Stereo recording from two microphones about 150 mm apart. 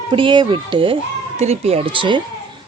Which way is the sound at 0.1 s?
35° right (ahead or behind).